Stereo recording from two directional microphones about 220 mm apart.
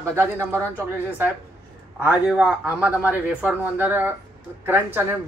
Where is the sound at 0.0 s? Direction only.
10° right (ahead or behind).